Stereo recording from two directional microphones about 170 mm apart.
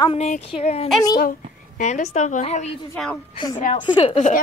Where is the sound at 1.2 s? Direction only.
50° left (ahead or behind).